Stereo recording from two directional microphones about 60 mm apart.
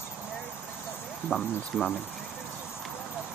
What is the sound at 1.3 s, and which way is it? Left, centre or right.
Speech, centre.